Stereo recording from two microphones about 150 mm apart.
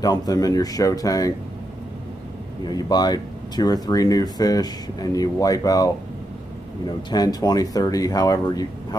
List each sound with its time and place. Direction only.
0.0 s speech: 25° left (ahead or behind)
2.6 s speech: 25° left (ahead or behind)
7.1 s speech: 25° left (ahead or behind)